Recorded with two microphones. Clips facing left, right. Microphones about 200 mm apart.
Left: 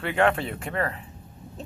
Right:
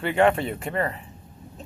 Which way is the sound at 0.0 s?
Centre (ahead or behind).